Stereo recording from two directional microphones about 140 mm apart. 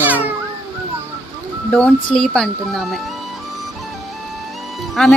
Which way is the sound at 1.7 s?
10° left (ahead or behind).